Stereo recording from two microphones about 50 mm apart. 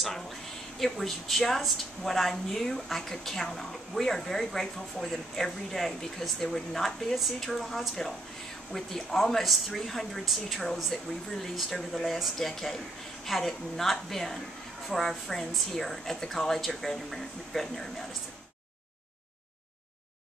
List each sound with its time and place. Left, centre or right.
0.7 s a woman's voice: centre